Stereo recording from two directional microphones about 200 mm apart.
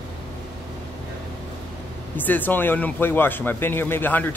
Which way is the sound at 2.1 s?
10° left (ahead or behind).